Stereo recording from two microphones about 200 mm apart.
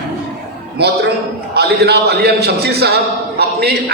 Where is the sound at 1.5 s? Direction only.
55° right (ahead or behind).